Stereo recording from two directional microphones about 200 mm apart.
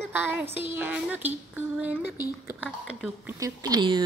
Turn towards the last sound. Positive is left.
turn(degrees=-20)  # may be behind; listen again after turning